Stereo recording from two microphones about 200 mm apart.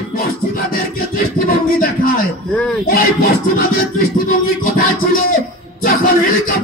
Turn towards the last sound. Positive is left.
turn(degrees=45)  # may be behind; listen again after turning